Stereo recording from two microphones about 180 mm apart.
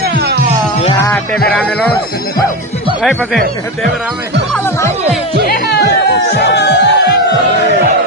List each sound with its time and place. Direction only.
0.0 s music: 65° right (ahead or behind)
1.5 s speech: 5° left (ahead or behind)
5.5 s music: 65° left (ahead or behind)
6.1 s speech: 70° left (ahead or behind)